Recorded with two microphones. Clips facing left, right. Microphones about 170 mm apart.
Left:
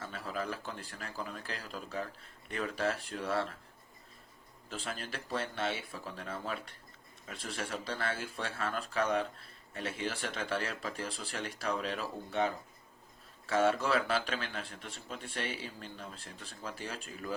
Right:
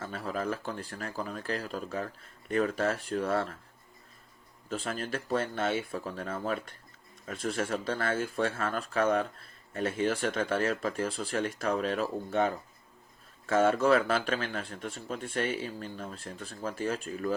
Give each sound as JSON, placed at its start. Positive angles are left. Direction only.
{"t": 0.0, "sound": "speech", "side_deg": -45}
{"t": 4.7, "sound": "speech", "side_deg": -45}